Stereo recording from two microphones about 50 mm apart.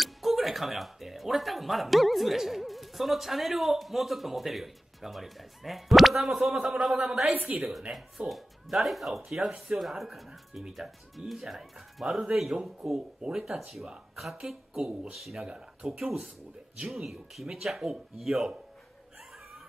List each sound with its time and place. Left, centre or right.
0.0 s speech: centre
7.2 s a woman's voice: right
7.9 s speech: centre
14.8 s speech: centre
15.1 s speech: centre
15.4 s speech: centre
16.0 s speech: centre